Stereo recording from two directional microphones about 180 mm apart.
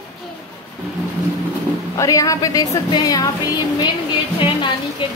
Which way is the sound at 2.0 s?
20° left (ahead or behind).